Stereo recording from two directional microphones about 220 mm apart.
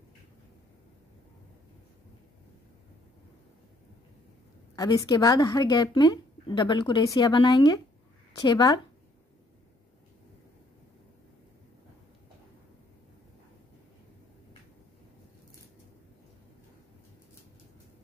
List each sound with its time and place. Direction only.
4.7 s a woman's voice: 15° left (ahead or behind)